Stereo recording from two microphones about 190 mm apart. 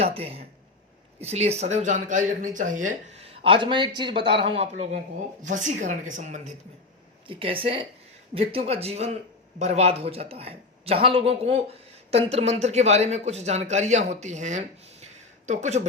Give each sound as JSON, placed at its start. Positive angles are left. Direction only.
{"t": 0.0, "sound": "speech", "side_deg": -30}
{"t": 7.3, "sound": "speech", "side_deg": -30}